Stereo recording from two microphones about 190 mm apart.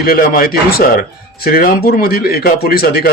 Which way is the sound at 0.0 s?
50° left (ahead or behind).